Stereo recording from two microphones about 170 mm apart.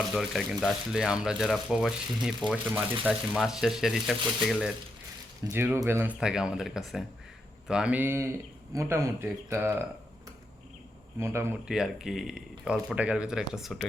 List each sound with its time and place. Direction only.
0.1 s speech: centre (ahead or behind)
5.5 s speech: 15° right (ahead or behind)
11.2 s speech: 15° right (ahead or behind)
11.7 s speech: 5° right (ahead or behind)